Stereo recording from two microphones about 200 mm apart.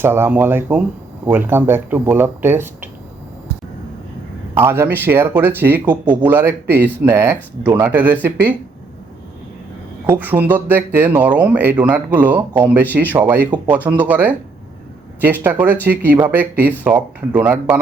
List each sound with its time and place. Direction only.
0.0 s speech: 10° right (ahead or behind)
4.5 s speech: 10° right (ahead or behind)
10.1 s speech: 10° right (ahead or behind)